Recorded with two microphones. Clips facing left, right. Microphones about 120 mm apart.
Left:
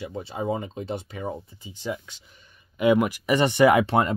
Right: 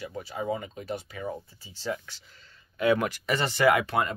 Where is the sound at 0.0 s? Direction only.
25° left (ahead or behind).